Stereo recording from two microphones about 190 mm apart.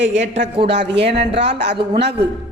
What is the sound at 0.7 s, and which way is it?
Speech, 60° right (ahead or behind).